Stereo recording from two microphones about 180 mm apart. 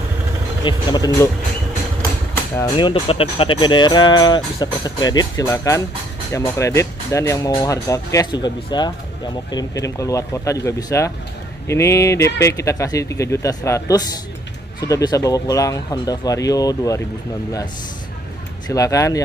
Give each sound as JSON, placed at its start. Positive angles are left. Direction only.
{"t": 0.7, "sound": "speech", "side_deg": 20}
{"t": 2.5, "sound": "speech", "side_deg": 20}
{"t": 18.7, "sound": "speech", "side_deg": 20}